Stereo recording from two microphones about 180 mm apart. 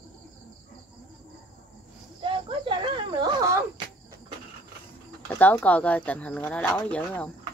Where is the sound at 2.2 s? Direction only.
30° right (ahead or behind).